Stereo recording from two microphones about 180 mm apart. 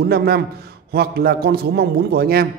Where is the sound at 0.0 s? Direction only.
60° right (ahead or behind).